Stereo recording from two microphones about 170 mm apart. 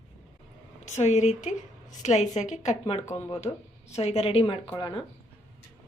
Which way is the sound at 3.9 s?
40° left (ahead or behind).